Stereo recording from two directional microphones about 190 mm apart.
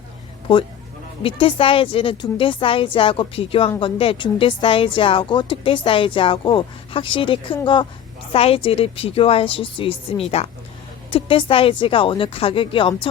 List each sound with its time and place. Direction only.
1.2 s a woman's voice: 30° left (ahead or behind)